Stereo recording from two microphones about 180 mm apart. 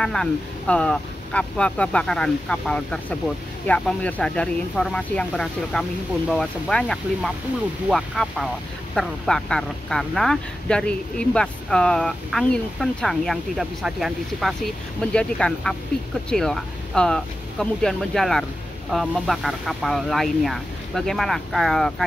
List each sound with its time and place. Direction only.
0.0 s speech: 5° left (ahead or behind)